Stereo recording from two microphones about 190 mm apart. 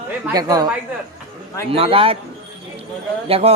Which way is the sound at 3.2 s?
30° right (ahead or behind).